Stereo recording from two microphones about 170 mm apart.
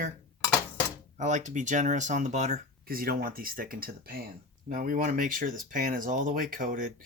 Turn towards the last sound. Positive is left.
turn(degrees=-50)  # may be behind; listen again after turning